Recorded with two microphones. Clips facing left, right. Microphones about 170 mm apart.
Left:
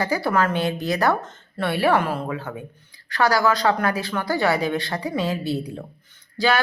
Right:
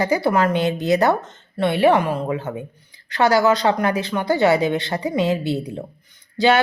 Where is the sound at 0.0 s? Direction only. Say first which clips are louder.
Right 3 dB; 20° right (ahead or behind).